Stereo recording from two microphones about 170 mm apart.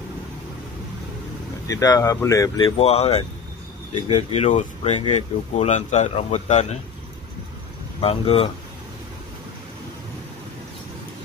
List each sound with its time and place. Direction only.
1.7 s speech: 20° left (ahead or behind)
2.8 s speech: 35° left (ahead or behind)
8.0 s speech: 35° left (ahead or behind)